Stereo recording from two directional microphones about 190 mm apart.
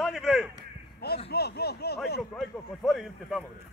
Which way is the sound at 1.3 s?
55° left (ahead or behind).